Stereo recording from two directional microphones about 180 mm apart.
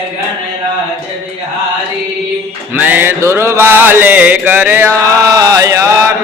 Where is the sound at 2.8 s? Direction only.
10° right (ahead or behind).